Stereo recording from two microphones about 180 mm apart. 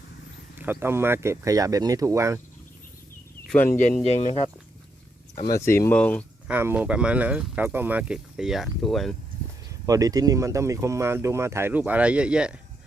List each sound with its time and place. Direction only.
0.6 s speech: 10° right (ahead or behind)
3.4 s speech: 5° left (ahead or behind)
3.8 s speech: 40° left (ahead or behind)
5.5 s speech: 15° left (ahead or behind)
6.5 s speech: 10° right (ahead or behind)
9.6 s speech: 20° right (ahead or behind)